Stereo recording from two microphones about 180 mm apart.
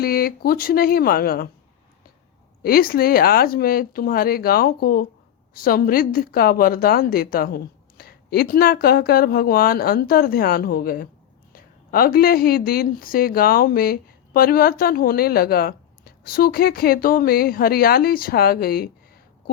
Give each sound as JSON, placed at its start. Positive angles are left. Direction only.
{"t": 0.0, "sound": "a woman's voice", "side_deg": 55}
{"t": 2.6, "sound": "a woman's voice", "side_deg": 55}